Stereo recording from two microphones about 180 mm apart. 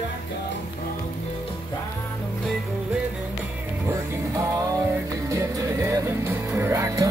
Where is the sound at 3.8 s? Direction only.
15° right (ahead or behind).